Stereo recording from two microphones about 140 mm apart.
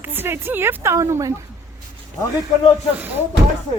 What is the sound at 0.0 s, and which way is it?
A woman's voice, 15° right (ahead or behind).